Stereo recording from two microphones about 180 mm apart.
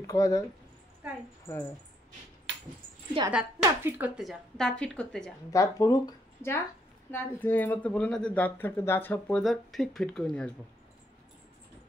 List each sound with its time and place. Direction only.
0.0 s speech: 15° left (ahead or behind)
2.5 s dog: 80° right
3.3 s speech: 10° right (ahead or behind)
5.5 s speech: 20° left (ahead or behind)